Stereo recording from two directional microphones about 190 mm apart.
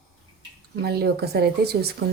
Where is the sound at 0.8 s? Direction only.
55° right (ahead or behind).